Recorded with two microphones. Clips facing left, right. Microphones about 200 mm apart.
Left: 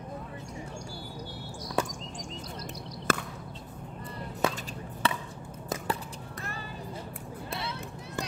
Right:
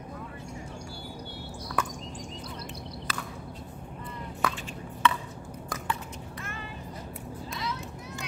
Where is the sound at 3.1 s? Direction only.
50° left (ahead or behind).